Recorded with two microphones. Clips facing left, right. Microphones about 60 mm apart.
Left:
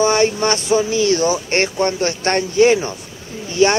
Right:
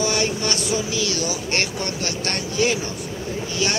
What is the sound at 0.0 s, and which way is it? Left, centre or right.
Speech, left.